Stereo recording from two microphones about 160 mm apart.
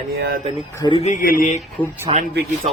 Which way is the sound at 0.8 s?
30° left (ahead or behind).